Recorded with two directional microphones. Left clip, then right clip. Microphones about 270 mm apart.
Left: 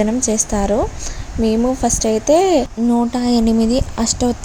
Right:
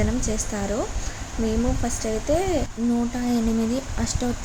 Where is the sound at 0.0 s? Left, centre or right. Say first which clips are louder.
Left 9 dB; left.